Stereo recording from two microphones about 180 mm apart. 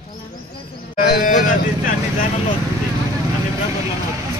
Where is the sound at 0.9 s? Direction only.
55° left (ahead or behind).